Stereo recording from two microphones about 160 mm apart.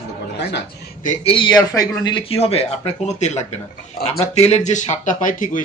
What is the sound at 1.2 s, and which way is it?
A man's voice, 30° left (ahead or behind).